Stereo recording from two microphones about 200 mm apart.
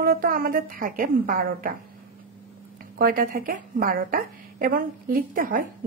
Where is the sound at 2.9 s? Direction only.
45° right (ahead or behind).